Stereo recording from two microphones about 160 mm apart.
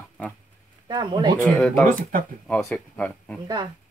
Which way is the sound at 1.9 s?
60° right (ahead or behind).